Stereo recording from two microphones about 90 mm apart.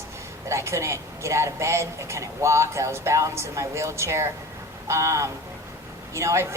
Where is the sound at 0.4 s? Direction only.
30° right (ahead or behind).